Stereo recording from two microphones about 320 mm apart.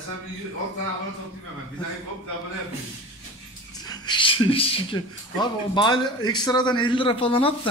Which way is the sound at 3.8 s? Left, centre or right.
Centre.